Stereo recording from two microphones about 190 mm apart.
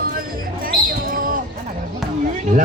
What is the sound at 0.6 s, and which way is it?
Basketball bounce, 45° right (ahead or behind).